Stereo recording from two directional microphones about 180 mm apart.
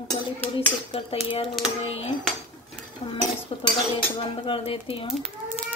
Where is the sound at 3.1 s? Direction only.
30° left (ahead or behind).